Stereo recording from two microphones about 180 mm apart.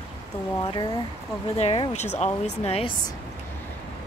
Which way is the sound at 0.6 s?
25° left (ahead or behind).